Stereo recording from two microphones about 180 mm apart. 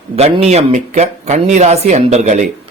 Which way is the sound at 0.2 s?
35° right (ahead or behind).